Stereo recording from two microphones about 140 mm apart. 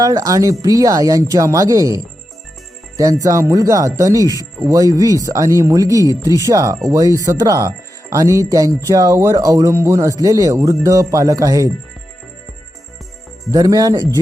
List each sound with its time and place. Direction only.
0.0 s speech: 25° right (ahead or behind)
3.0 s speech: 25° right (ahead or behind)
13.5 s speech: 25° right (ahead or behind)